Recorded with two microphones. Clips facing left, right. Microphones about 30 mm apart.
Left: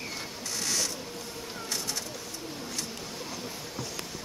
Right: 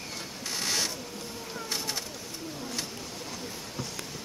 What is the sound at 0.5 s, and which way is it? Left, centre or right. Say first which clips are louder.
Mechanisms: right 1 dB; right.